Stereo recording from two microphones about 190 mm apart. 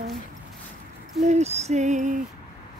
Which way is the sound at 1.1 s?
35° right (ahead or behind).